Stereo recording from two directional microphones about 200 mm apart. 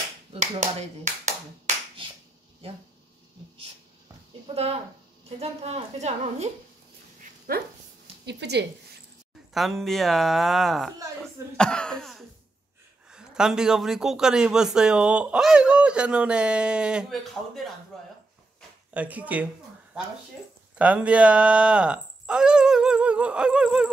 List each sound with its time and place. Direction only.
0.3 s speech: 35° right (ahead or behind)
5.4 s a woman's voice: 30° right (ahead or behind)
7.5 s speech: 45° right (ahead or behind)
8.3 s speech: 55° right (ahead or behind)
9.5 s speech: centre (ahead or behind)
17.9 s a sound: centre (ahead or behind)
18.9 s speech: 5° right (ahead or behind)